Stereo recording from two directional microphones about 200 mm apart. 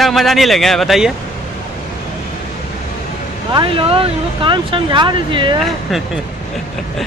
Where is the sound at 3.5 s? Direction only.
25° right (ahead or behind).